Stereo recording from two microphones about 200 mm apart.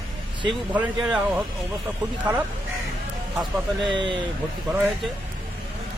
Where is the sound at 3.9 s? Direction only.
25° right (ahead or behind).